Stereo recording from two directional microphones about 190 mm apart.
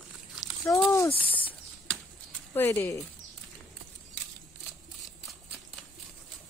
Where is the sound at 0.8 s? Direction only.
15° left (ahead or behind).